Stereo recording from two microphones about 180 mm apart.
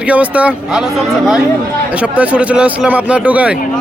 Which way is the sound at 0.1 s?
5° right (ahead or behind).